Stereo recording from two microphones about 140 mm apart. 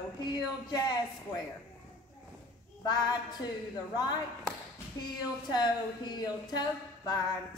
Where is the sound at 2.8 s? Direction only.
30° left (ahead or behind).